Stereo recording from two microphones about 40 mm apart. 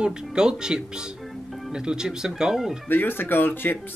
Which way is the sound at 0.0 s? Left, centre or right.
Right.